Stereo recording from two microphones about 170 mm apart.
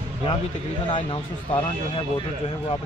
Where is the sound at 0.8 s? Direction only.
30° left (ahead or behind).